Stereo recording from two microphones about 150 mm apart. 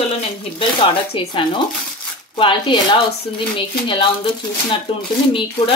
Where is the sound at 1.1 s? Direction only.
35° left (ahead or behind).